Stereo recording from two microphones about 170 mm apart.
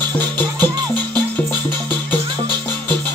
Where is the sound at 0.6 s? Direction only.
25° right (ahead or behind).